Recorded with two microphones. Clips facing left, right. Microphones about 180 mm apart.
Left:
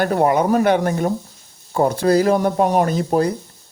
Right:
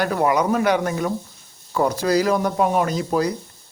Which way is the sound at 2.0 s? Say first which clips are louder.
Left 5 dB; 50° left (ahead or behind).